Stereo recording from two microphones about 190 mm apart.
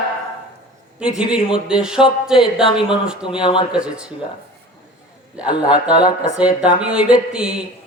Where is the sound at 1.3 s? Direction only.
5° right (ahead or behind).